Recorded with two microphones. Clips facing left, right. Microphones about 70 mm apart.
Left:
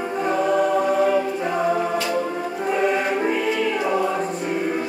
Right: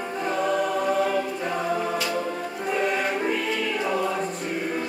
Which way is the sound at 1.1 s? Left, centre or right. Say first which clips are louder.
Left 5 dB; centre.